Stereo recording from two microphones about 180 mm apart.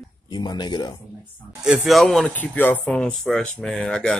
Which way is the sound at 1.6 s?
Centre (ahead or behind).